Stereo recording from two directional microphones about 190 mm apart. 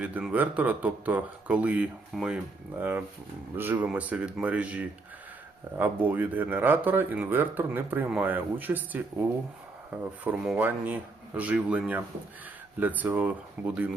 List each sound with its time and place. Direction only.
0.0 s speech: 5° right (ahead or behind)